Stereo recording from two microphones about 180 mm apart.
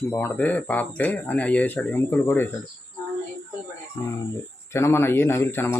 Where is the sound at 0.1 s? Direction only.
10° left (ahead or behind).